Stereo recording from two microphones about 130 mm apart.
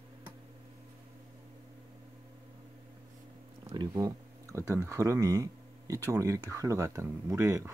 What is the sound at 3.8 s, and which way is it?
Speech, 25° right (ahead or behind).